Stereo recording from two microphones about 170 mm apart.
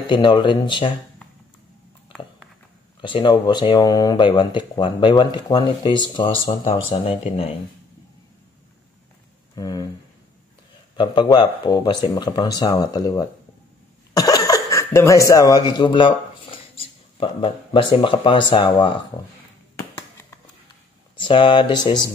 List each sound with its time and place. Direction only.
0.1 s speech: 25° left (ahead or behind)
3.0 s speech: 30° left (ahead or behind)
6.7 s speech: 40° left (ahead or behind)
9.6 s speech: 20° left (ahead or behind)
11.0 s speech: 25° left (ahead or behind)
19.8 s a sound: 15° left (ahead or behind)
21.2 s speech: 30° left (ahead or behind)